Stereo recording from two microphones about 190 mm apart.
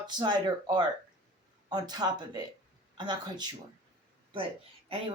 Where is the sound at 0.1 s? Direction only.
25° right (ahead or behind).